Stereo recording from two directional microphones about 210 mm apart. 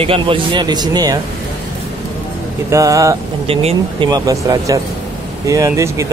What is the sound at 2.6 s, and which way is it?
Speech, 15° right (ahead or behind).